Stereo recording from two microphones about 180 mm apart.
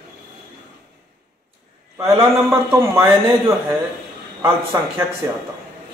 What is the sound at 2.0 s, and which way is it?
A man's voice, 15° right (ahead or behind).